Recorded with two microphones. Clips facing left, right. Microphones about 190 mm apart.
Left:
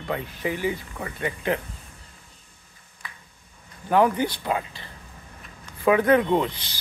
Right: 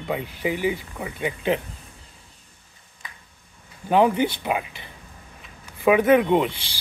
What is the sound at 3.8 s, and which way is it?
Speech, 20° right (ahead or behind).